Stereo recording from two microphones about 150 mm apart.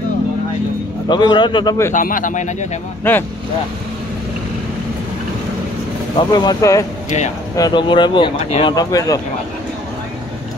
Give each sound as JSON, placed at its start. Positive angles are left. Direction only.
{"t": 1.0, "sound": "a man's voice", "side_deg": 30}
{"t": 2.0, "sound": "speech", "side_deg": 60}
{"t": 3.0, "sound": "speech", "side_deg": 15}
{"t": 6.1, "sound": "a man's voice", "side_deg": 30}